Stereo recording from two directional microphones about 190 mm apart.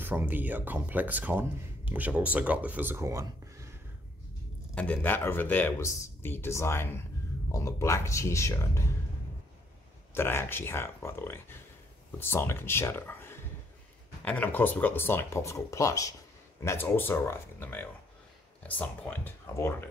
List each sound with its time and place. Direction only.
0.0 s speech: 10° right (ahead or behind)
4.7 s speech: 10° left (ahead or behind)
10.1 s speech: 10° left (ahead or behind)